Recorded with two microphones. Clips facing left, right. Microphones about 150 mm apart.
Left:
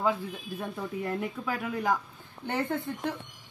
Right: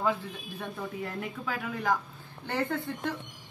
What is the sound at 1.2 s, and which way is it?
Speech, 10° left (ahead or behind).